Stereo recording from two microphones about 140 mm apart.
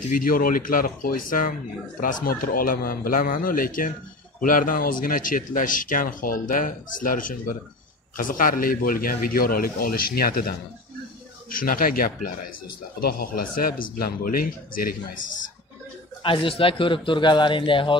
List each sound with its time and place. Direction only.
0.1 s speech: 85° left
2.0 s speech: 75° left (ahead or behind)
11.5 s speech: 90° left
16.2 s a man's voice: 40° left (ahead or behind)